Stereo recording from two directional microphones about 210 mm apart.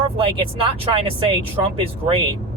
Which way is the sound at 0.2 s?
25° right (ahead or behind).